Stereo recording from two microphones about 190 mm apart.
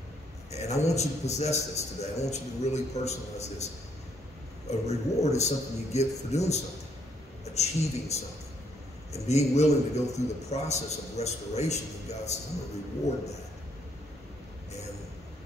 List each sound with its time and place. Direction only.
0.5 s a man's voice: 35° left (ahead or behind)